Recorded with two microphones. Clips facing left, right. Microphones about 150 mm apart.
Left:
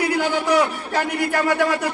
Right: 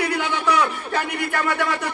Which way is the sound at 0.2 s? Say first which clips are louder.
Left 3 dB; 40° left (ahead or behind).